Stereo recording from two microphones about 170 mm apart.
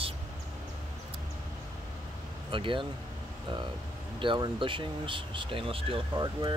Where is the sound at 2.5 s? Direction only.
30° right (ahead or behind).